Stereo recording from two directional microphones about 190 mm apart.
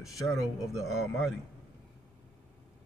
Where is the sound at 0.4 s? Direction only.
Centre (ahead or behind).